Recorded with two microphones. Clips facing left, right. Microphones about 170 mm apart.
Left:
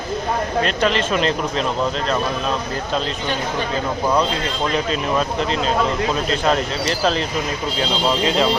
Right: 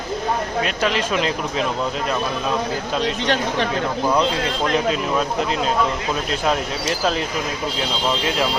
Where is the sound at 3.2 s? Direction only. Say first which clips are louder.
Right 3 dB; 80° right.